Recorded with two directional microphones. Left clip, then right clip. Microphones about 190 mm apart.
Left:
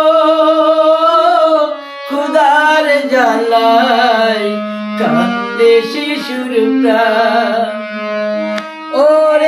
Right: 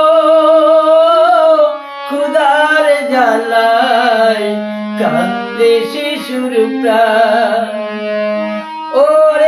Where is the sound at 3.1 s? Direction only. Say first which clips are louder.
Even; centre (ahead or behind).